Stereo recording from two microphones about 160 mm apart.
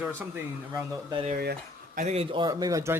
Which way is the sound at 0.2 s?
10° right (ahead or behind).